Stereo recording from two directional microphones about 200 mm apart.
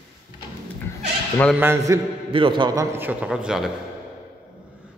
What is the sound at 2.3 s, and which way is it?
A man's voice, 25° right (ahead or behind).